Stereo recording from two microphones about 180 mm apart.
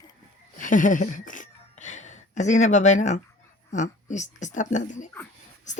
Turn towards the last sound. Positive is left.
turn(degrees=45)  # may be behind; listen again after turning